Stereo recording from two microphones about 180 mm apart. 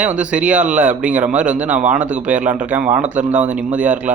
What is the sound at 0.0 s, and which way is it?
Speech, 5° right (ahead or behind).